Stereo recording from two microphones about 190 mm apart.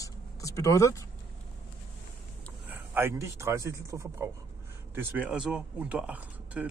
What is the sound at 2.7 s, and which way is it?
Speech, 10° right (ahead or behind).